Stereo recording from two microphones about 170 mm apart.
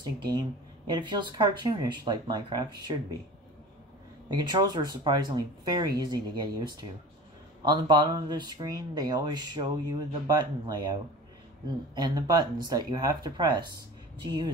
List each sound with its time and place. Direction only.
0.0 s speech: 25° right (ahead or behind)
4.3 s speech: 25° right (ahead or behind)